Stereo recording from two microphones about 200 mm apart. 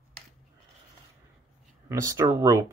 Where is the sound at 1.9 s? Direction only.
15° right (ahead or behind).